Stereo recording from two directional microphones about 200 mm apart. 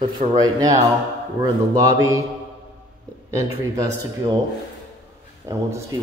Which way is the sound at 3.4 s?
15° right (ahead or behind).